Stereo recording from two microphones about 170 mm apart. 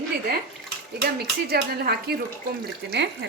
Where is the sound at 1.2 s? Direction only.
70° right (ahead or behind).